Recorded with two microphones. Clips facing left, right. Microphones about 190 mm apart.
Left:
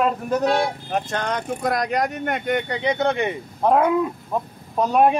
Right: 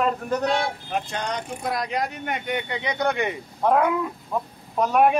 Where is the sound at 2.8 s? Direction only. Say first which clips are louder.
Left 3 dB; 25° left (ahead or behind).